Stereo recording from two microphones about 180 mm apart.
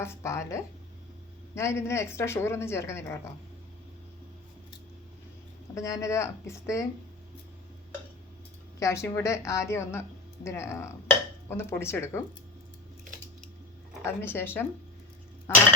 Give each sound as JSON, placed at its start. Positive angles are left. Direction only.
{"t": 0.0, "sound": "speech", "side_deg": 15}
{"t": 5.7, "sound": "speech", "side_deg": 15}
{"t": 8.8, "sound": "speech", "side_deg": 15}
{"t": 14.0, "sound": "speech", "side_deg": 15}